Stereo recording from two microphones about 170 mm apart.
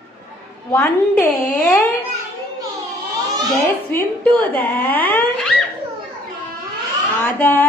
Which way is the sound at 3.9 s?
10° left (ahead or behind).